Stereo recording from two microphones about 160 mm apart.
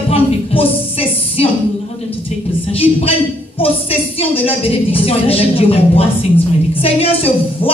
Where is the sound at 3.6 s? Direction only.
35° left (ahead or behind).